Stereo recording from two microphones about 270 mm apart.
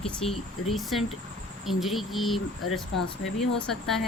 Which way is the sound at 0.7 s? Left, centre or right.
Centre.